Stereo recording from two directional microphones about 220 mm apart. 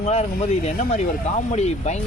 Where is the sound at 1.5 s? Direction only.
30° left (ahead or behind).